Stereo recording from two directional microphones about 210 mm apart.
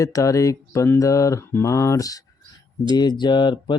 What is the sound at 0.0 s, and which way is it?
Mantra, 15° left (ahead or behind).